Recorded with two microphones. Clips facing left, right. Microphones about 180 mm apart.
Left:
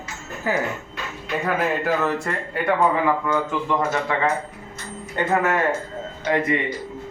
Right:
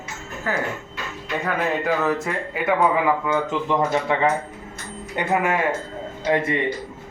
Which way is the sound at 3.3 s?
20° right (ahead or behind).